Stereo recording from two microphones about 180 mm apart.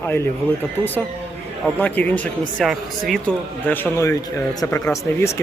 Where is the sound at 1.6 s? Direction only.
10° left (ahead or behind).